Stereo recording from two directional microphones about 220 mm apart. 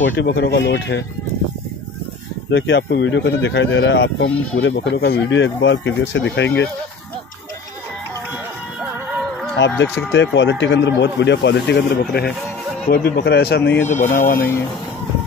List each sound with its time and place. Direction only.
0.0 s speech: 60° left (ahead or behind)
2.5 s speech: 55° left (ahead or behind)
9.8 s speech: 55° left (ahead or behind)
13.9 s speech: 35° left (ahead or behind)